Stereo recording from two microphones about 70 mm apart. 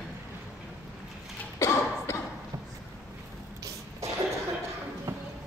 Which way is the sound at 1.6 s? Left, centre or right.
Left.